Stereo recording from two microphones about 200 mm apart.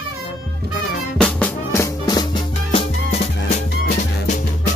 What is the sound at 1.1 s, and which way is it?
Music, 5° left (ahead or behind).